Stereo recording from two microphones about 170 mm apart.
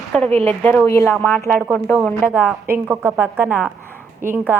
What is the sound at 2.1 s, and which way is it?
A woman's voice, 10° right (ahead or behind).